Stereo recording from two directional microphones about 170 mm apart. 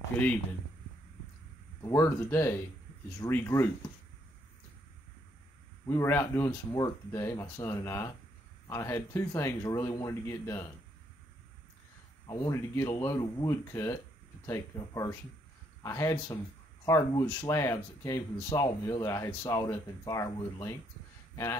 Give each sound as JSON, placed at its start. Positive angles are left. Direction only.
{"t": 0.1, "sound": "speech", "side_deg": 10}
{"t": 1.8, "sound": "speech", "side_deg": 15}
{"t": 5.9, "sound": "speech", "side_deg": 15}
{"t": 12.3, "sound": "speech", "side_deg": 20}